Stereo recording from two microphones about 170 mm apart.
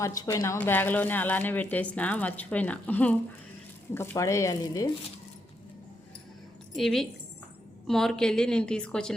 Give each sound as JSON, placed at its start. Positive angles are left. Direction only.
{"t": 0.0, "sound": "speech", "side_deg": 20}
{"t": 6.7, "sound": "a woman's voice", "side_deg": 0}